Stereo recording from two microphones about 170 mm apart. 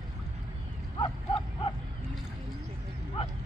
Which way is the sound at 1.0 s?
30° left (ahead or behind).